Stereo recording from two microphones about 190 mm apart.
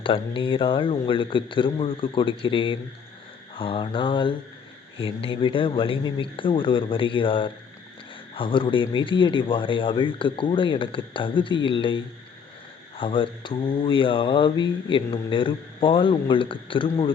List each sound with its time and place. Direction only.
0.0 s speech: 25° left (ahead or behind)